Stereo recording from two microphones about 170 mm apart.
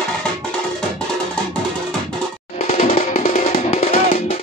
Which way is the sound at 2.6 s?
45° left (ahead or behind).